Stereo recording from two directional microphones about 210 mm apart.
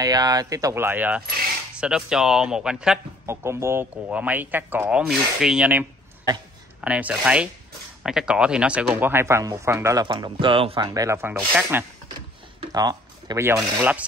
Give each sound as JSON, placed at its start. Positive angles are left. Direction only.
{"t": 0.0, "sound": "a man's voice", "side_deg": -20}